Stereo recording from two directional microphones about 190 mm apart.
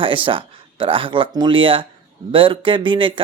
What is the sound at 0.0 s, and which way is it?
Speech, 25° right (ahead or behind).